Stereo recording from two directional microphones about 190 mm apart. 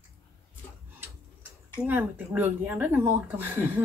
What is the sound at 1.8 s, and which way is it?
Speech, 10° right (ahead or behind).